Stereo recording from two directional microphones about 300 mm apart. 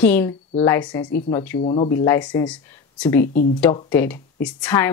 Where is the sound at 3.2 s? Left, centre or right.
Left.